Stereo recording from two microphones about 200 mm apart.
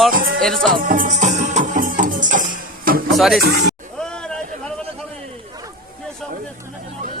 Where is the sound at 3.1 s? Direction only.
Centre (ahead or behind).